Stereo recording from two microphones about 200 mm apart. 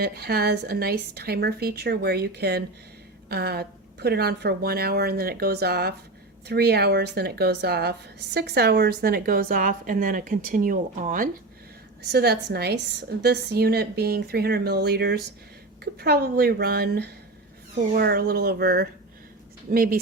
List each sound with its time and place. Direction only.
0.0 s a woman's voice: 50° right (ahead or behind)
12.1 s a woman's voice: 55° right (ahead or behind)